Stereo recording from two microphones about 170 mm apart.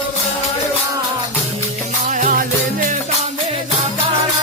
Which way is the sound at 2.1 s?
50° right (ahead or behind).